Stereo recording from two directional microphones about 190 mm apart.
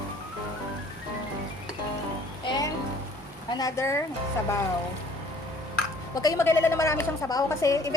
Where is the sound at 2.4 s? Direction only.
20° left (ahead or behind).